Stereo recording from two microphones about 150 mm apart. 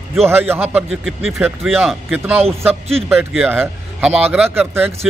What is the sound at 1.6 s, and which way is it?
Speech, centre (ahead or behind).